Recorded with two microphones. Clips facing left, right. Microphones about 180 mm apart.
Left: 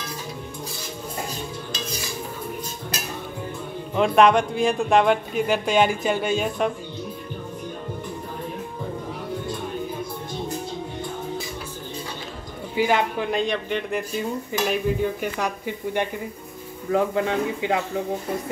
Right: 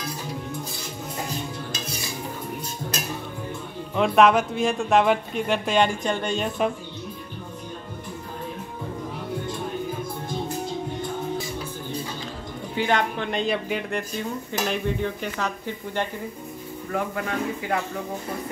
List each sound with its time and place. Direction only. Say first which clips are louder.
3.9 s speech: left 1 dB; centre (ahead or behind)
12.7 s speech: left 2 dB; 10° left (ahead or behind)
14.5 s speech: left 3 dB; 10° left (ahead or behind)
16.9 s speech: left 6 dB; 25° left (ahead or behind)